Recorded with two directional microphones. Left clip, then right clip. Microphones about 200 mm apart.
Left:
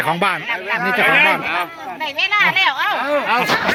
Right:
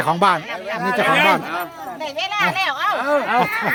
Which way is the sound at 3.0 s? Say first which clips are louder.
Even; centre (ahead or behind).